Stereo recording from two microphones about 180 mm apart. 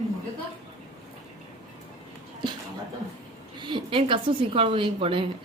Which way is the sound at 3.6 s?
30° right (ahead or behind).